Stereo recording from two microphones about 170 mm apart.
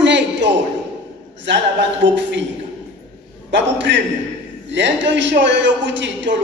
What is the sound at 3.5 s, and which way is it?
A man's voice, 90° right.